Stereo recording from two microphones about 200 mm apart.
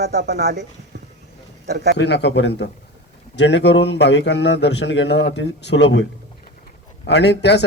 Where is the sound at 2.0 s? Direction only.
60° left (ahead or behind).